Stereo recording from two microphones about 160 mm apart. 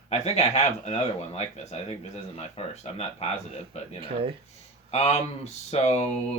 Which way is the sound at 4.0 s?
35° right (ahead or behind).